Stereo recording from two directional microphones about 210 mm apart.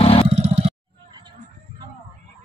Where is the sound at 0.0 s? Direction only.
25° left (ahead or behind).